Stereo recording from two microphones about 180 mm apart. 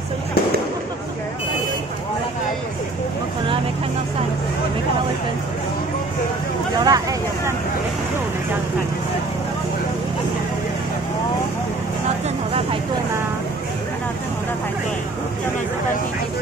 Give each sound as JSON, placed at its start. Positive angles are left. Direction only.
{"t": 6.8, "sound": "speech", "side_deg": -20}